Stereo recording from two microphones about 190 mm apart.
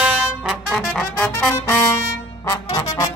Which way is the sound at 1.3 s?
10° left (ahead or behind).